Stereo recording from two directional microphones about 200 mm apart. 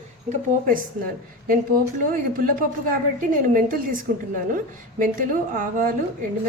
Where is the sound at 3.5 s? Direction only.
45° right (ahead or behind).